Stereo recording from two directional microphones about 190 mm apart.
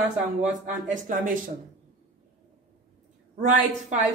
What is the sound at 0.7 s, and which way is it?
Speech, 40° right (ahead or behind).